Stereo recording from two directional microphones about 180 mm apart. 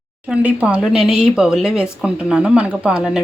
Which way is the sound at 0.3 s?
5° right (ahead or behind).